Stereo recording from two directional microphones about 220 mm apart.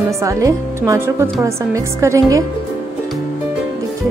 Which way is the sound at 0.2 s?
15° right (ahead or behind).